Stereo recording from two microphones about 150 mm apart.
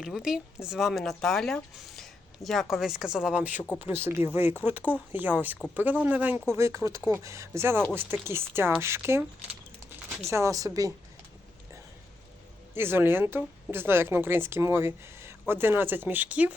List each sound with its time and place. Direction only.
0.0 s a woman's voice: 5° right (ahead or behind)
10.2 s speech: 20° right (ahead or behind)
12.7 s a woman's voice: 15° right (ahead or behind)